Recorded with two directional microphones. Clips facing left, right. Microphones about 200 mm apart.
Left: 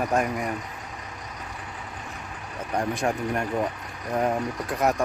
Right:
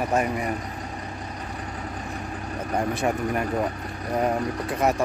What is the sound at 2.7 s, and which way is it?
Speech, 5° right (ahead or behind).